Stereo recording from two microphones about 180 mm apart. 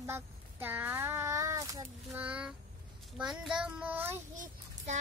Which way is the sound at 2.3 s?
5° right (ahead or behind).